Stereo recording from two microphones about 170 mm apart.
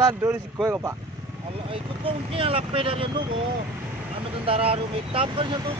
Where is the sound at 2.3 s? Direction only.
35° right (ahead or behind).